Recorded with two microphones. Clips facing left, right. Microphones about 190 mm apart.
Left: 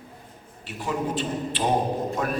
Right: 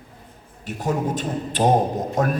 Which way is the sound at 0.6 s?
45° right (ahead or behind).